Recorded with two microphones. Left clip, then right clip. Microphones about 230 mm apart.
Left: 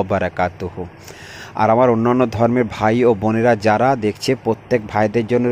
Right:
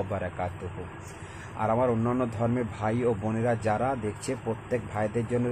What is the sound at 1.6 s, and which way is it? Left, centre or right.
Speech, left.